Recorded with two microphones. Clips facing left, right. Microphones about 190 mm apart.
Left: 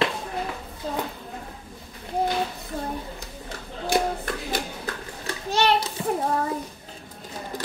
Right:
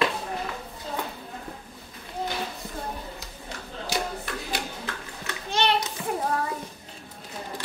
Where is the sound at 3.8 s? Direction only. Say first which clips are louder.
Left 7 dB; 50° left (ahead or behind).